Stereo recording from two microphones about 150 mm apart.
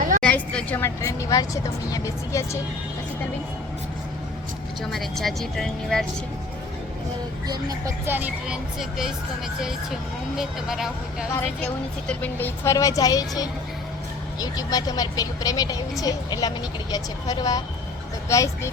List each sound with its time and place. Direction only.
0.2 s a woman's voice: 10° left (ahead or behind)
4.9 s speech: centre (ahead or behind)
7.4 s speech: 25° right (ahead or behind)
8.0 s speech: 10° right (ahead or behind)
10.3 s speech: 5° right (ahead or behind)
12.0 s a woman's voice: 10° left (ahead or behind)
12.7 s a woman's voice: 25° left (ahead or behind)